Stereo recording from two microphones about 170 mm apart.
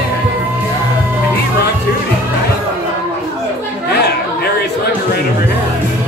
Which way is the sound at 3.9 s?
75° left (ahead or behind).